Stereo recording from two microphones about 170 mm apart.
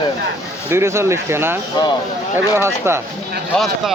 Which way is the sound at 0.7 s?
15° right (ahead or behind).